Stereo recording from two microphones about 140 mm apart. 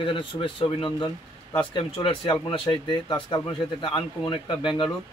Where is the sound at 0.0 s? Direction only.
35° left (ahead or behind).